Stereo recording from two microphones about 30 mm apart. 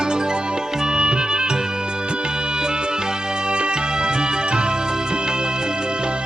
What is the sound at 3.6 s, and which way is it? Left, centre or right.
Music, right.